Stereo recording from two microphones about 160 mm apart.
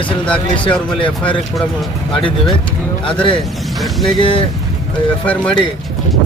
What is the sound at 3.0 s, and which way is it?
Speech, 30° left (ahead or behind).